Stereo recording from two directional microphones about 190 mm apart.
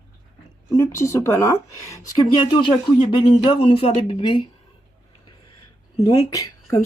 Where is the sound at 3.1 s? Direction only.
30° left (ahead or behind).